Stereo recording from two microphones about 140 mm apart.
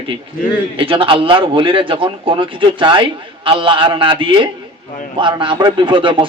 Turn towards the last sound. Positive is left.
turn(degrees=-35)  # may be behind; listen again after turning